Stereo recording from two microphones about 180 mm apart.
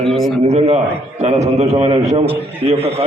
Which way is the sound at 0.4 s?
35° right (ahead or behind).